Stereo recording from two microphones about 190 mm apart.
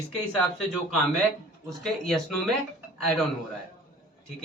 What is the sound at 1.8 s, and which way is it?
Speech, centre (ahead or behind).